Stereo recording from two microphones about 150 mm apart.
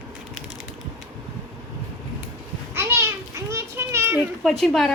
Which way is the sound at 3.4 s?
20° right (ahead or behind).